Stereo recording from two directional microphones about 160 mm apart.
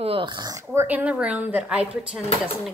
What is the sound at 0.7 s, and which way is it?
Speech, 10° right (ahead or behind).